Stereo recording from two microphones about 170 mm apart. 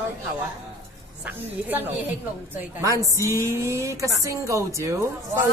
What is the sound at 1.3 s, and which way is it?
Speech, 10° right (ahead or behind).